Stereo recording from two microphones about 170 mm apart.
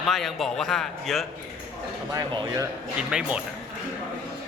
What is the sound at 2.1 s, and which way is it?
Speech, 20° right (ahead or behind).